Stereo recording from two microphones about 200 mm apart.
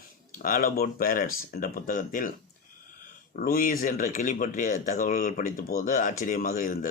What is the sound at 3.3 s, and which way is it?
Speech, 45° left (ahead or behind).